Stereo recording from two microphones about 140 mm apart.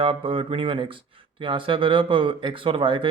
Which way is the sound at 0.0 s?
40° right (ahead or behind).